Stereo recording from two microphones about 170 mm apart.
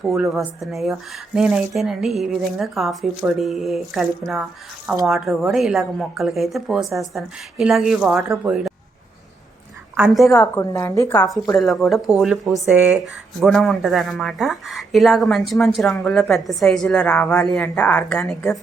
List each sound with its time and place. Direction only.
0.1 s a woman's voice: centre (ahead or behind)
10.1 s a woman's voice: centre (ahead or behind)
10.3 s a woman's voice: 15° left (ahead or behind)
11.5 s a woman's voice: centre (ahead or behind)